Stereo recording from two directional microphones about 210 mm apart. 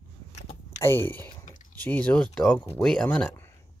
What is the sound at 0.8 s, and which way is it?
Speech, 10° left (ahead or behind).